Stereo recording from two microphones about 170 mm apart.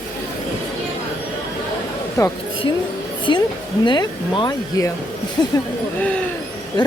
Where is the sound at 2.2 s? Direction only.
20° left (ahead or behind).